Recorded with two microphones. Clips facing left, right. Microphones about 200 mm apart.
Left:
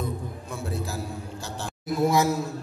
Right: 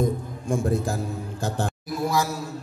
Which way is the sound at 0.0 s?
50° right (ahead or behind).